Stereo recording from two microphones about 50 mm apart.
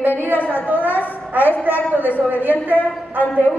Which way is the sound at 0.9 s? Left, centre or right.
Left.